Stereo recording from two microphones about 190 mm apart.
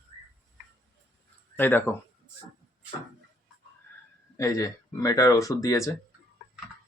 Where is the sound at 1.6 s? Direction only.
10° left (ahead or behind).